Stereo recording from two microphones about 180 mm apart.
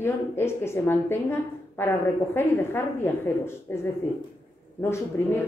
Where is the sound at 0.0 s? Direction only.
15° left (ahead or behind).